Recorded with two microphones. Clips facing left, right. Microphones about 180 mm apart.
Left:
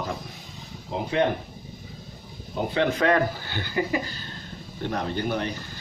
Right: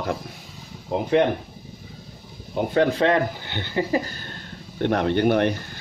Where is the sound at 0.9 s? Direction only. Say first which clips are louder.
Right 5 dB; 50° right (ahead or behind).